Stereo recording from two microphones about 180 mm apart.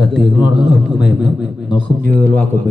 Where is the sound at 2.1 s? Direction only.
10° left (ahead or behind).